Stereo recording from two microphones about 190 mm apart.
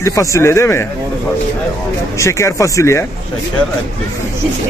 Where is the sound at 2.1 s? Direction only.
15° left (ahead or behind).